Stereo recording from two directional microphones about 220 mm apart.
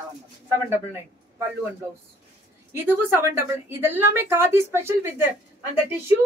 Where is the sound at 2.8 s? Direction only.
10° right (ahead or behind).